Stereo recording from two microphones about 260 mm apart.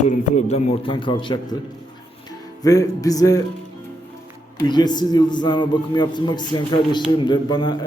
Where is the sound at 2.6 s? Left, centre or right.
Centre.